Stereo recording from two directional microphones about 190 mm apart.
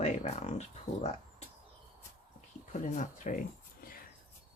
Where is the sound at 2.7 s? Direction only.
40° left (ahead or behind).